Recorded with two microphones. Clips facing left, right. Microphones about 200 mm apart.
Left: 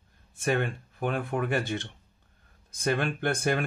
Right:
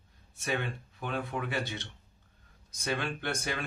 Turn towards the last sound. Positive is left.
turn(degrees=50)  # may be behind; listen again after turning